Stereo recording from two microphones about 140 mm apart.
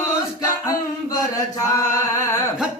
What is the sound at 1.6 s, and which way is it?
Singing, 25° left (ahead or behind).